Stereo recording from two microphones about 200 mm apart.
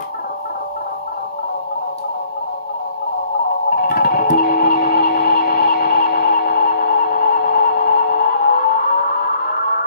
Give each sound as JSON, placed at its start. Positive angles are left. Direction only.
{"t": 3.7, "sound": "music", "side_deg": 50}